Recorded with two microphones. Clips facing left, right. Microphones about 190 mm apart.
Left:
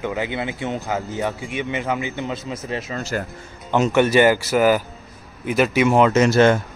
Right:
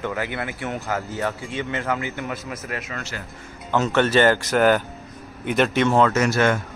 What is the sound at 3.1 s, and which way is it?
Speech, 45° left (ahead or behind).